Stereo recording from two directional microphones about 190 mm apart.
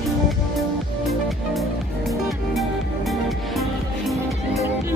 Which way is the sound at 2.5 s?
Centre (ahead or behind).